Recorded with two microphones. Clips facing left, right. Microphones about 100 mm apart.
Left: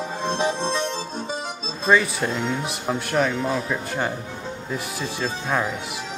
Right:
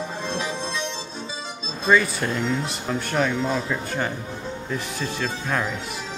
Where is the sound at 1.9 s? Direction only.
5° left (ahead or behind).